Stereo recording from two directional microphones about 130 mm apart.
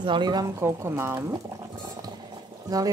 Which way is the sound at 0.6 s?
20° right (ahead or behind).